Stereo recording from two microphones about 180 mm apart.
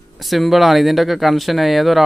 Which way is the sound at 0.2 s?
Centre (ahead or behind).